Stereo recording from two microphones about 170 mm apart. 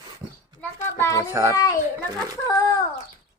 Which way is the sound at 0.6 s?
15° left (ahead or behind).